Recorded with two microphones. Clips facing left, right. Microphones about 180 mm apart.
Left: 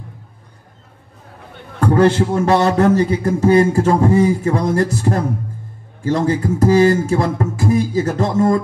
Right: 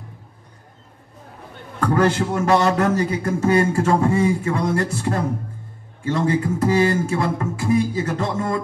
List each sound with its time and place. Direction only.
1.8 s a man's voice: 30° left (ahead or behind)